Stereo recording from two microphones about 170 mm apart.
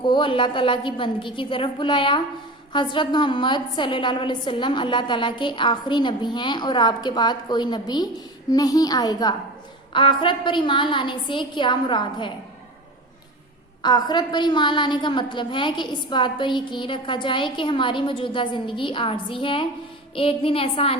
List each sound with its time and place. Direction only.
0.0 s a woman's voice: 30° left (ahead or behind)
13.8 s a woman's voice: 25° left (ahead or behind)